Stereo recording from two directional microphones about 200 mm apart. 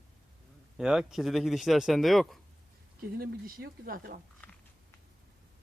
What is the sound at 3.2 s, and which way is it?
Speech, 45° right (ahead or behind).